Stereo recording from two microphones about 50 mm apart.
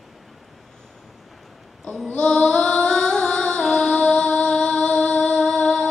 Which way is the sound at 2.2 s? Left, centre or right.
Centre.